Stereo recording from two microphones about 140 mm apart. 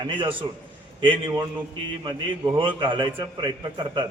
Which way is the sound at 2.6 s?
35° right (ahead or behind).